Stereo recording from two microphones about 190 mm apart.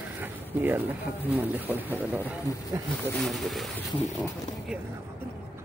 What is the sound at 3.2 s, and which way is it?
Speech, centre (ahead or behind).